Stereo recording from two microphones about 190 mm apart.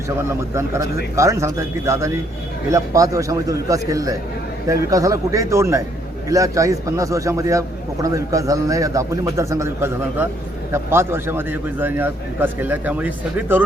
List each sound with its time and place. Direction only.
0.2 s a man's voice: 15° right (ahead or behind)